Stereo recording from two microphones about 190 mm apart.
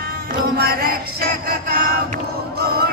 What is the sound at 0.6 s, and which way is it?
Music, 55° right (ahead or behind).